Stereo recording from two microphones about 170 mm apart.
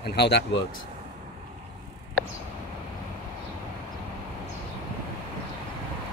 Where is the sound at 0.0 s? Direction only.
75° left (ahead or behind).